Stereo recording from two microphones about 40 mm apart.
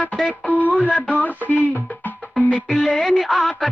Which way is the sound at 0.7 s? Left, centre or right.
Left.